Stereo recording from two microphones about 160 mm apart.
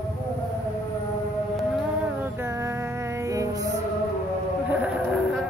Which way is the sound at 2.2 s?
15° right (ahead or behind).